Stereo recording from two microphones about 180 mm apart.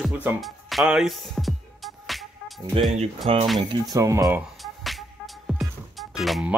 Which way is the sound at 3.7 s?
20° right (ahead or behind).